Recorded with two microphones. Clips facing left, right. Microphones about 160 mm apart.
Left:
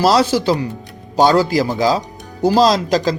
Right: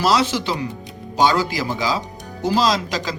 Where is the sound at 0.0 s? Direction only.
35° left (ahead or behind).